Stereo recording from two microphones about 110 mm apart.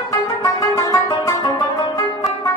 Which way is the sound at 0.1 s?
35° left (ahead or behind).